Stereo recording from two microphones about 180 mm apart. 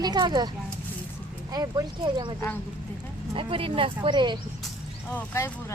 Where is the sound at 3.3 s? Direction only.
30° right (ahead or behind).